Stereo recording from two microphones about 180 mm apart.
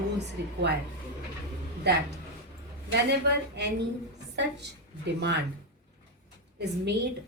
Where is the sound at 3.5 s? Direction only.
70° right (ahead or behind).